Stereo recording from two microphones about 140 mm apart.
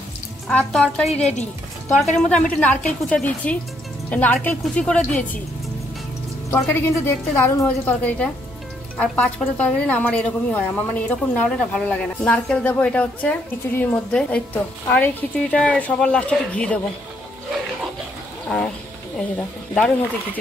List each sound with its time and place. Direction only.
0.5 s a woman's voice: 5° left (ahead or behind)
6.5 s a woman's voice: 15° left (ahead or behind)
19.1 s a woman's voice: 10° left (ahead or behind)